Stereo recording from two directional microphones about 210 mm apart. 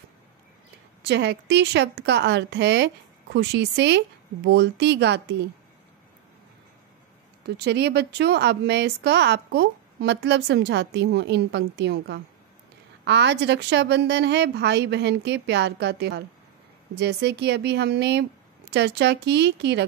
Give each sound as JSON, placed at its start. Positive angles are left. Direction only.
{"t": 1.0, "sound": "a woman's voice", "side_deg": -55}
{"t": 7.4, "sound": "speech", "side_deg": -50}